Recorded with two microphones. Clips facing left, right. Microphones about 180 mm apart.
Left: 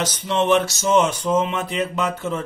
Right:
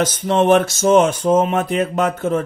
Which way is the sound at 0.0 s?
50° right (ahead or behind).